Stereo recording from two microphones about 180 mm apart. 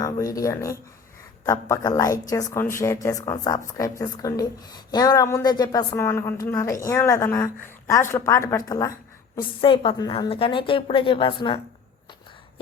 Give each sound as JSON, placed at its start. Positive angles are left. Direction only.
{"t": 0.0, "sound": "a woman's voice", "side_deg": 20}
{"t": 9.6, "sound": "speech", "side_deg": 30}